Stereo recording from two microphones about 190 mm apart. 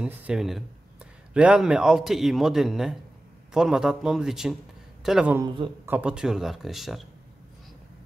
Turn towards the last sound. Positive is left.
turn(degrees=0)  # may be behind; listen again after turning